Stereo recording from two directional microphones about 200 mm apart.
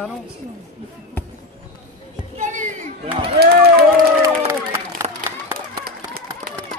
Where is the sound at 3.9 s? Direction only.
15° right (ahead or behind).